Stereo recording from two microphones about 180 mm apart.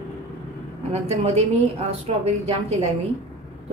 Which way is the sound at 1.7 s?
35° right (ahead or behind).